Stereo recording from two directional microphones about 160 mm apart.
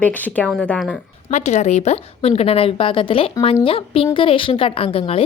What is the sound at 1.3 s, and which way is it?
A woman's voice, 45° left (ahead or behind).